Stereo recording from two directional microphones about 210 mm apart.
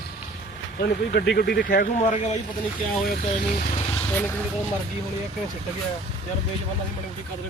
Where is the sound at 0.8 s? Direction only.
50° left (ahead or behind); by 4.0 s 30° left (ahead or behind).